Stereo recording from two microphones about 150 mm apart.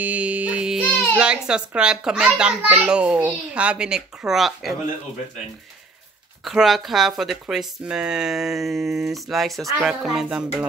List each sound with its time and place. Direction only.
0.0 s music: 10° right (ahead or behind)
1.1 s speech: 5° right (ahead or behind)
6.4 s speech: centre (ahead or behind)